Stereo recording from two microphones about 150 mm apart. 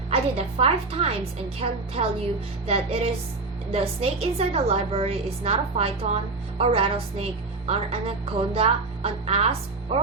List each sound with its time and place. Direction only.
0.1 s a woman's voice: 40° right (ahead or behind)